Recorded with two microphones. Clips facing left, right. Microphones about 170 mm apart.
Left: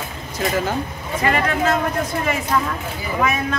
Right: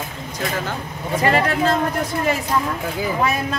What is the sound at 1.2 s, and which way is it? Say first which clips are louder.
Speech: right 1 dB; 35° right (ahead or behind).